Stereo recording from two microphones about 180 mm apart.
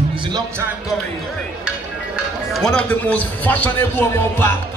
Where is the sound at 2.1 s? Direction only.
Centre (ahead or behind).